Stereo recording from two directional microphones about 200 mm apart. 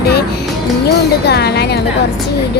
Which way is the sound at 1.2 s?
55° left (ahead or behind).